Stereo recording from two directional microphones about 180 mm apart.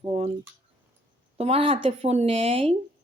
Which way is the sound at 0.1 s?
35° right (ahead or behind).